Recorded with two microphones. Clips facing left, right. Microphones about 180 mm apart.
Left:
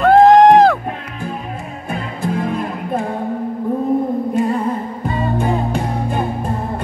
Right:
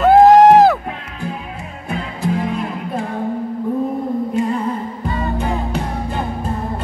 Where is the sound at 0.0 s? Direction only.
5° right (ahead or behind).